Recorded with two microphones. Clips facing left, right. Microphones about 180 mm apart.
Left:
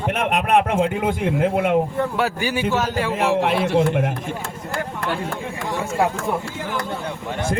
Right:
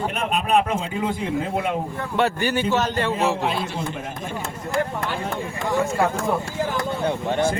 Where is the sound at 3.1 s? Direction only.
80° left.